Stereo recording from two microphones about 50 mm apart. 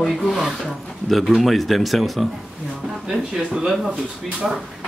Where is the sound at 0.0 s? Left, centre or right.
Centre.